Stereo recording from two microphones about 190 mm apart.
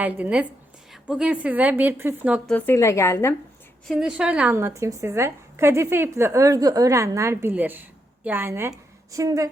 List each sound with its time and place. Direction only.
0.0 s a woman's voice: 10° right (ahead or behind)
2.5 s a woman's voice: 10° left (ahead or behind)
3.8 s a woman's voice: 5° right (ahead or behind)